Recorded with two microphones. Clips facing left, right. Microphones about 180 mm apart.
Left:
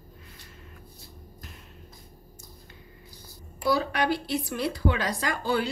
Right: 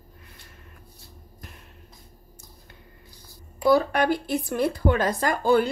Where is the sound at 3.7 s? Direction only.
50° right (ahead or behind).